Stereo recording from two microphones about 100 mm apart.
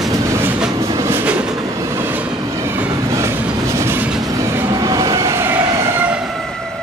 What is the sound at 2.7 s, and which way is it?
Train, 25° right (ahead or behind).